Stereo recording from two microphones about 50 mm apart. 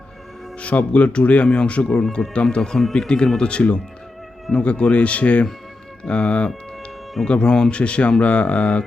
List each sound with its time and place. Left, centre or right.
0.6 s speech: left